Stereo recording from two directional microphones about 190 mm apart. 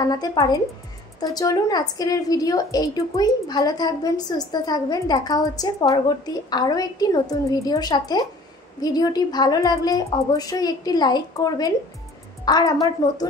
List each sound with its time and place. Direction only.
0.0 s a woman's voice: 20° left (ahead or behind)